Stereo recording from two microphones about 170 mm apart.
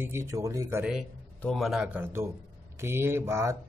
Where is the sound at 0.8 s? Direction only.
5° right (ahead or behind).